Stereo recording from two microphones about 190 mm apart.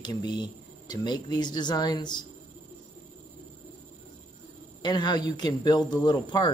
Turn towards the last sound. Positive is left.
turn(degrees=20)  # may be behind; listen again after turning